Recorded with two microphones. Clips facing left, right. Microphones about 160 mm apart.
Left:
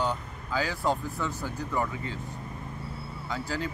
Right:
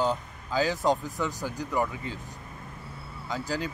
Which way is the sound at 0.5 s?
20° right (ahead or behind).